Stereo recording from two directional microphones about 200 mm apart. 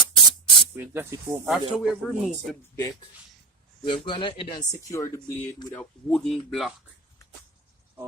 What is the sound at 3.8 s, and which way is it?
Speech, 25° left (ahead or behind).